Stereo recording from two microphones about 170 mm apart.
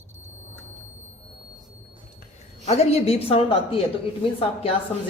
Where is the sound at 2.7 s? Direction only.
35° left (ahead or behind).